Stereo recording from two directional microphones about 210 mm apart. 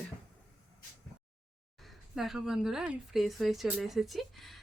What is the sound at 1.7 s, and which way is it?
Speech, centre (ahead or behind).